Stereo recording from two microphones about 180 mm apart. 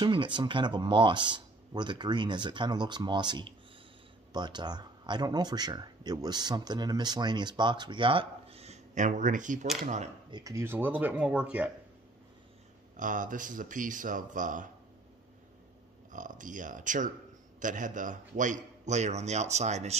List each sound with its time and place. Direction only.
0.0 s speech: 25° right (ahead or behind); by 9.7 s 45° right (ahead or behind)
10.3 s speech: 15° right (ahead or behind)
12.9 s speech: 45° right (ahead or behind)
16.1 s a man's voice: 45° right (ahead or behind)